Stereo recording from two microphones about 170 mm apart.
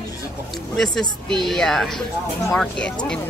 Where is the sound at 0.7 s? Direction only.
5° left (ahead or behind).